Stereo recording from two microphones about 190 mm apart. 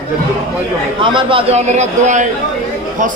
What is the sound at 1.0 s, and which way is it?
A man's voice, 25° right (ahead or behind).